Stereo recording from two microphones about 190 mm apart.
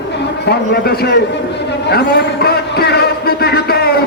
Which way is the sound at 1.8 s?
55° left (ahead or behind).